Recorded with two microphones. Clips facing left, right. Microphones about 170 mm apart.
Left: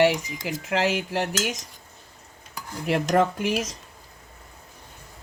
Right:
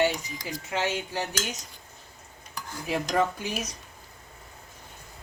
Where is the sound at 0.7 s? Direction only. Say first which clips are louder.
Left 5 dB; 90° left.